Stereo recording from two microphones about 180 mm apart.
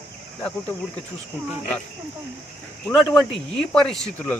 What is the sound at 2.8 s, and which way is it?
Speech, 5° left (ahead or behind).